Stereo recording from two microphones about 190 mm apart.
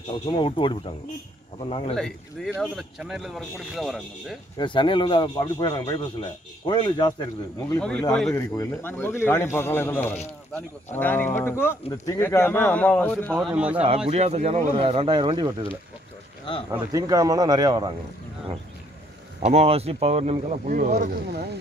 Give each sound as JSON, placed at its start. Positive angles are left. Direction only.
{"t": 0.3, "sound": "speech", "side_deg": 25}
{"t": 2.0, "sound": "speech", "side_deg": 5}
{"t": 4.6, "sound": "speech", "side_deg": 25}
{"t": 7.8, "sound": "speech", "side_deg": 5}
{"t": 13.6, "sound": "a man's voice", "side_deg": -5}
{"t": 13.8, "sound": "speech", "side_deg": -30}
{"t": 16.7, "sound": "speech", "side_deg": -20}
{"t": 19.4, "sound": "speech", "side_deg": -30}